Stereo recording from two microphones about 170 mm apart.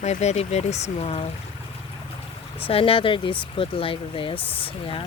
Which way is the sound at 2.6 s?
35° left (ahead or behind).